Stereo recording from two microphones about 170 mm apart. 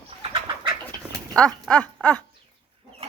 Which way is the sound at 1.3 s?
5° left (ahead or behind).